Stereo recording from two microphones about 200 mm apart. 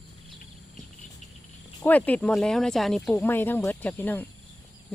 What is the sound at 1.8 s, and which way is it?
Speech, 10° left (ahead or behind).